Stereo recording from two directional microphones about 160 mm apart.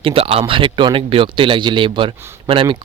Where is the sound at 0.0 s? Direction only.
35° right (ahead or behind).